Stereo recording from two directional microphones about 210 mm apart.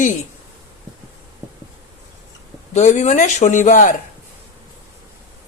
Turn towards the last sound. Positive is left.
turn(degrees=35)  # may be behind; listen again after turning